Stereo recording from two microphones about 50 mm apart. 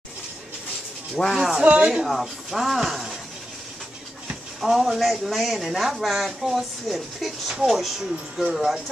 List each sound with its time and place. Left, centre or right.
1.2 s speech: centre
1.6 s speech: right
2.0 s speech: centre
4.6 s speech: centre